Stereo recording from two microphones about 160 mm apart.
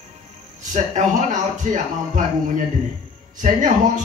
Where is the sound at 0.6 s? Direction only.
50° right (ahead or behind).